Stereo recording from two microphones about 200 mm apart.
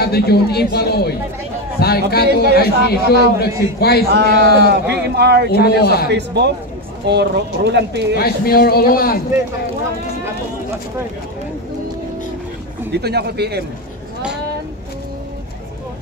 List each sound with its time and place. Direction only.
0.0 s a man's voice: 55° left (ahead or behind)
4.6 s speech: 55° right (ahead or behind)
5.5 s a man's voice: 50° left (ahead or behind)
6.1 s speech: 55° right (ahead or behind)
8.2 s a man's voice: 50° left (ahead or behind)
12.9 s speech: 55° right (ahead or behind)